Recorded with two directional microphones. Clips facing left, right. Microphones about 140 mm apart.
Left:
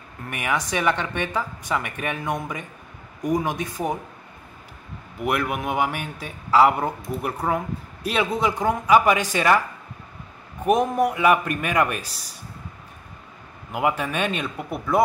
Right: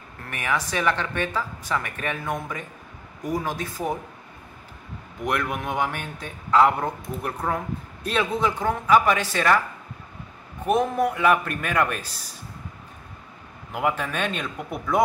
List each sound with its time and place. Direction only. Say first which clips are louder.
0.3 s a man's voice: left 1 dB; 10° left (ahead or behind)
5.2 s a man's voice: left 2 dB; 10° left (ahead or behind)
10.6 s a man's voice: left 2 dB; 10° left (ahead or behind)
13.7 s a man's voice: left 2 dB; 10° left (ahead or behind)